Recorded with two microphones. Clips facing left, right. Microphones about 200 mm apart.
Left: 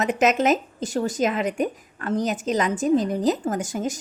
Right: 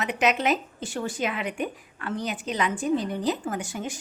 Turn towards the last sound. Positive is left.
turn(degrees=40)  # may be behind; listen again after turning